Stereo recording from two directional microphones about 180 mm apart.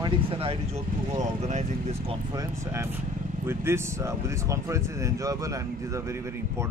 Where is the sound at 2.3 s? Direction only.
15° right (ahead or behind).